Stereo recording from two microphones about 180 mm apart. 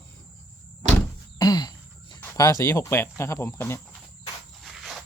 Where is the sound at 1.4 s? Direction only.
20° left (ahead or behind).